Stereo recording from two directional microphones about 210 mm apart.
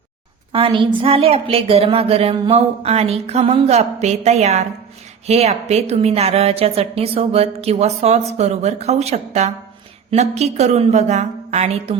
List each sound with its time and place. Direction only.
0.5 s a woman's voice: 25° right (ahead or behind)